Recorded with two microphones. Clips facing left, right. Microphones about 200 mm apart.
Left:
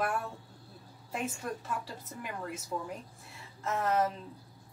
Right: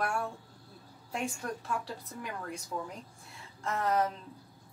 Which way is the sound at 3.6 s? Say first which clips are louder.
Even; centre (ahead or behind).